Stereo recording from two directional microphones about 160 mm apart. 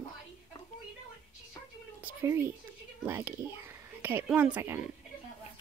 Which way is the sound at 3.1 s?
15° right (ahead or behind).